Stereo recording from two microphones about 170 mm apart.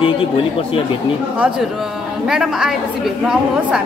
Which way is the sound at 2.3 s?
Centre (ahead or behind).